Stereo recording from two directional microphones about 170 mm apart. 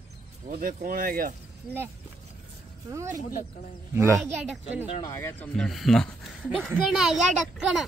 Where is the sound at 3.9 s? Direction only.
15° right (ahead or behind).